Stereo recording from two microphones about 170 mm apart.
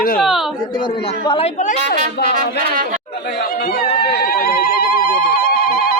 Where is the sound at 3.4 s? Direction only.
60° left (ahead or behind).